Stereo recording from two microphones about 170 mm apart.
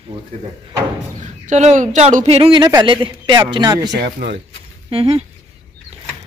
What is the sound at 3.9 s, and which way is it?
Speech, 80° right.